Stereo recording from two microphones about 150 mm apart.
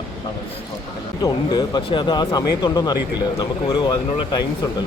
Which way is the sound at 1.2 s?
30° left (ahead or behind).